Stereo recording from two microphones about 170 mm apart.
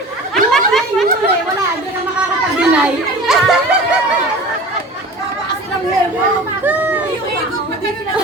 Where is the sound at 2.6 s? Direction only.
5° right (ahead or behind).